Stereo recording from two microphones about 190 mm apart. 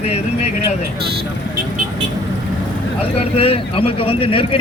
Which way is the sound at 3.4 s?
30° left (ahead or behind).